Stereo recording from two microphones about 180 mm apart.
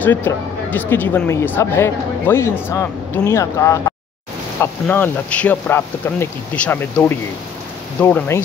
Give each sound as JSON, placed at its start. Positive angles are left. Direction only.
{"t": 0.0, "sound": "speech", "side_deg": 10}